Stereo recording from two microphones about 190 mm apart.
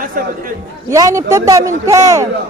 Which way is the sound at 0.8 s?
15° right (ahead or behind).